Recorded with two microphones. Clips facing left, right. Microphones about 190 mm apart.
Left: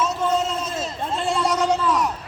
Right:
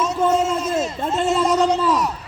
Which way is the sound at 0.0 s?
10° right (ahead or behind).